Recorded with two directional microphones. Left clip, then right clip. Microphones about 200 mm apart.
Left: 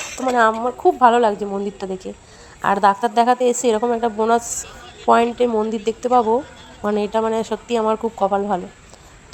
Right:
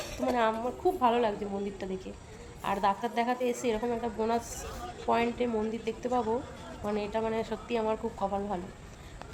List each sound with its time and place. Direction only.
0.2 s speech: 40° left (ahead or behind)
2.6 s a woman's voice: 45° left (ahead or behind)